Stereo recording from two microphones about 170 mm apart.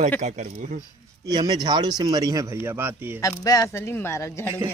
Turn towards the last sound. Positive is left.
turn(degrees=15)  # may be behind; listen again after turning